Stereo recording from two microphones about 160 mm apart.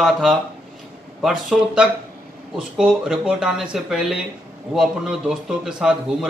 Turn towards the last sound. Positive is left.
turn(degrees=-5)  # may be behind; listen again after turning